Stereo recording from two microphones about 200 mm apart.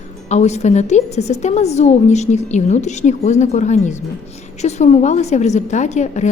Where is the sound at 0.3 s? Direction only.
35° left (ahead or behind).